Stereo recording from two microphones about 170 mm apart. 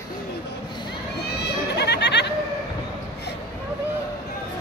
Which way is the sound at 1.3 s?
80° left.